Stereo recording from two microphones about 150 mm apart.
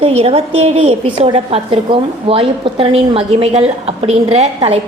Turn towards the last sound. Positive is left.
turn(degrees=-45)  # may be behind; listen again after turning